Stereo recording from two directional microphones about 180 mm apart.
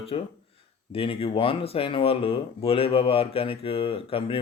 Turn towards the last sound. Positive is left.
turn(degrees=30)  # may be behind; listen again after turning